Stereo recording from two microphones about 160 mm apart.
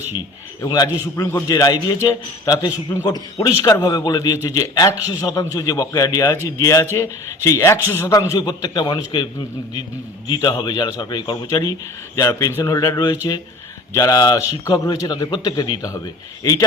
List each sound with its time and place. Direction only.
0.6 s a man's voice: 25° left (ahead or behind)
10.2 s a man's voice: 25° left (ahead or behind)